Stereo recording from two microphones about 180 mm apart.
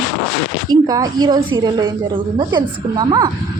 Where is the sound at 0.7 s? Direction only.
20° right (ahead or behind).